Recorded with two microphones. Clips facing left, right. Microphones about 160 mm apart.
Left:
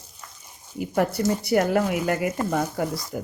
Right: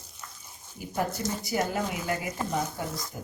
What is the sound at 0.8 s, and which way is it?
Speech, 70° left (ahead or behind).